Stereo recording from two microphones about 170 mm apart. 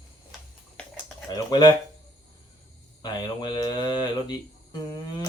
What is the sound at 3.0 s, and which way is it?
Speech, 25° left (ahead or behind).